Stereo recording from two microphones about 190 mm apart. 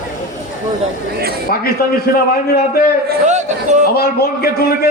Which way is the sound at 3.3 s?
40° right (ahead or behind).